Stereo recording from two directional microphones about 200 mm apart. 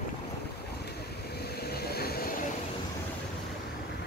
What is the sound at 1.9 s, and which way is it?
Vehicle, 50° left (ahead or behind).